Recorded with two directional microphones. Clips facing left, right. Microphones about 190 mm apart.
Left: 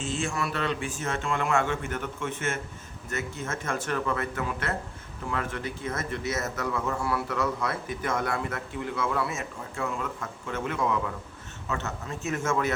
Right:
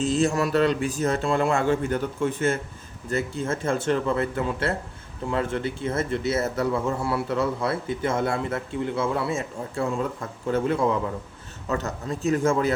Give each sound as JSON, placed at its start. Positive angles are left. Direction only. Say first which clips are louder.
{"t": 0.0, "sound": "a man's voice", "louder": "right 8 dB", "side_deg": -40}